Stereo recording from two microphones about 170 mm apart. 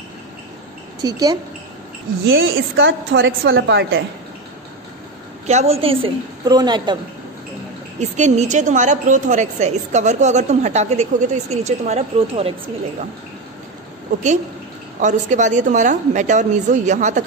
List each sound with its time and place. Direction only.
1.0 s a woman's voice: 25° right (ahead or behind)
2.5 s a woman's voice: 90° right
5.5 s a woman's voice: 40° right (ahead or behind)
8.0 s a woman's voice: 40° right (ahead or behind)
15.0 s a woman's voice: 45° right (ahead or behind)